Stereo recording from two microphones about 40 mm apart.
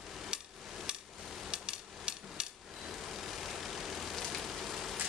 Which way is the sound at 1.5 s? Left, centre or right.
Right.